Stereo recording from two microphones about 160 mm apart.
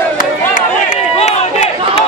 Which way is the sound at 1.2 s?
40° left (ahead or behind).